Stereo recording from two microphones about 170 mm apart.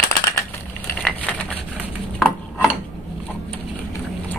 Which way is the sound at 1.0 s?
5° left (ahead or behind).